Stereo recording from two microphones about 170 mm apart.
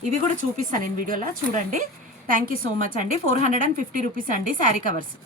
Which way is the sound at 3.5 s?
55° right (ahead or behind).